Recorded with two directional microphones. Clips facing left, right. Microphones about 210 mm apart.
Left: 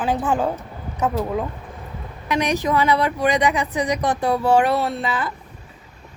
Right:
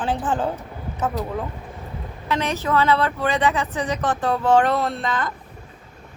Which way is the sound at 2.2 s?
15° left (ahead or behind).